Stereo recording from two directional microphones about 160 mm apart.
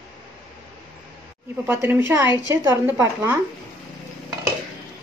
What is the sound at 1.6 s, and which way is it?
Speech, 15° right (ahead or behind).